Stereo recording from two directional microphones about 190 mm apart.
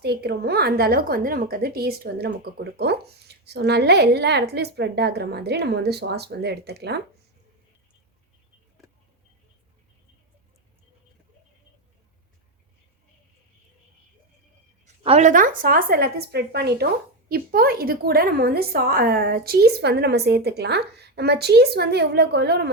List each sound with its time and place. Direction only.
0.0 s a woman's voice: 55° right (ahead or behind)
15.0 s a woman's voice: 35° right (ahead or behind); by 22.7 s 60° right (ahead or behind)